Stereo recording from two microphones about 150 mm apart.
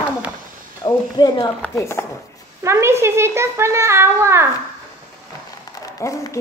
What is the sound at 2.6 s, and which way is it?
A child's voice, 15° right (ahead or behind).